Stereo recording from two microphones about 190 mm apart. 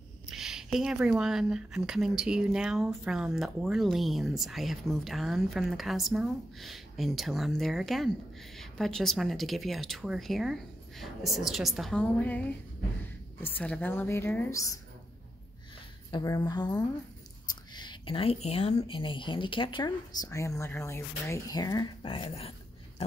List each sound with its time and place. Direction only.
0.3 s a woman's voice: centre (ahead or behind); by 14.7 s 15° left (ahead or behind)
16.1 s speech: 20° left (ahead or behind)